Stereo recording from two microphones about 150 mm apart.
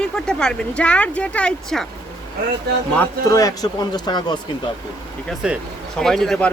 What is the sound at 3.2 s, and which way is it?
A man's voice, 20° left (ahead or behind).